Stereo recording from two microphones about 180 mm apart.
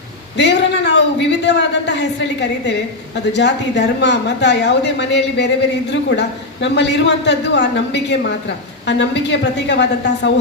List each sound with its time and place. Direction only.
0.3 s a woman's voice: 70° left (ahead or behind)